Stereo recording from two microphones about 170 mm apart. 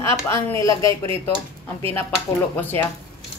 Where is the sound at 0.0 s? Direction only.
15° left (ahead or behind).